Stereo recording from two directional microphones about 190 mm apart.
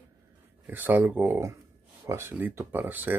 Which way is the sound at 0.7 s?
10° right (ahead or behind).